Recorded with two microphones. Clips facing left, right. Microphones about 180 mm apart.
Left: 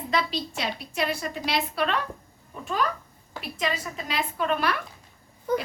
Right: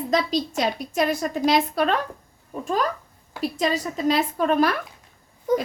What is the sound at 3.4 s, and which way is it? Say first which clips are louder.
A woman's voice: right 6 dB; 35° right (ahead or behind).